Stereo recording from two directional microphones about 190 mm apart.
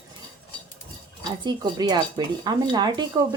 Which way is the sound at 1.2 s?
20° right (ahead or behind).